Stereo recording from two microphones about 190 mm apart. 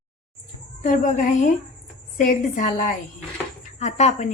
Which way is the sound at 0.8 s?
45° left (ahead or behind).